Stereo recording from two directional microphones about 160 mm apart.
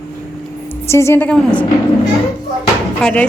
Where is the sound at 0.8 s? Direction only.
15° left (ahead or behind).